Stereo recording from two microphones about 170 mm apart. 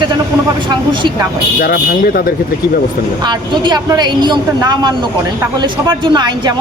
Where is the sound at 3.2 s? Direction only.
25° right (ahead or behind).